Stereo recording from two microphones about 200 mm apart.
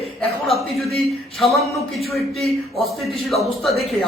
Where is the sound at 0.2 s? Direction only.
Centre (ahead or behind).